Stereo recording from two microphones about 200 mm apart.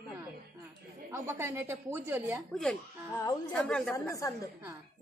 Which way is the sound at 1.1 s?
15° right (ahead or behind).